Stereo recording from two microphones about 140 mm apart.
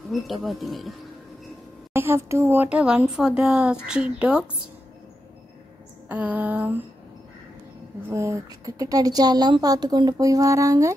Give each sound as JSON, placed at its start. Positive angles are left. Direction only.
{"t": 0.1, "sound": "speech", "side_deg": 0}
{"t": 2.0, "sound": "speech", "side_deg": -20}
{"t": 6.0, "sound": "speech", "side_deg": -10}
{"t": 8.1, "sound": "a woman's voice", "side_deg": -20}